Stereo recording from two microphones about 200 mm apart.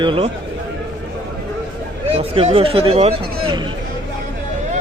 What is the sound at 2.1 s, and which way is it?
Speech, 30° right (ahead or behind).